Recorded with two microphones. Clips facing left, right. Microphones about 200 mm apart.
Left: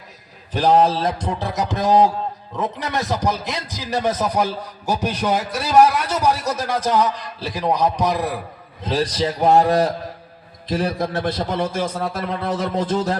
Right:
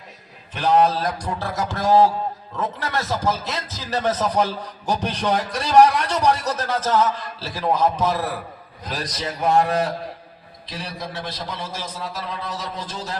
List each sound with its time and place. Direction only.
0.5 s a man's voice: 35° left (ahead or behind); by 8.4 s 15° left (ahead or behind)
8.8 s a man's voice: 30° left (ahead or behind)
10.7 s a man's voice: 50° left (ahead or behind)